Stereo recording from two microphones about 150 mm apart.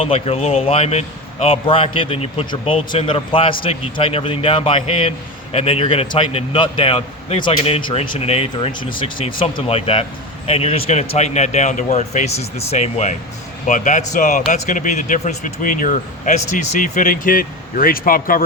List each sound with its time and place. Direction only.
0.0 s a man's voice: 40° left (ahead or behind); by 18.4 s 70° left (ahead or behind)